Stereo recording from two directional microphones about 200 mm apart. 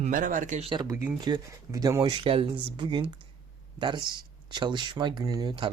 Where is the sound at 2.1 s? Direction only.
25° right (ahead or behind).